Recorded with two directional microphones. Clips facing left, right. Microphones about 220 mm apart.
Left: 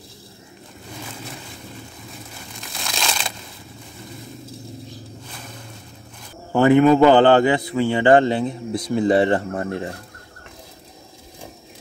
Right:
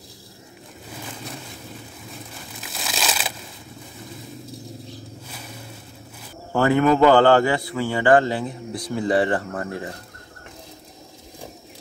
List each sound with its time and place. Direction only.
2.6 s crumpling: 5° right (ahead or behind)
6.5 s a man's voice: 20° left (ahead or behind)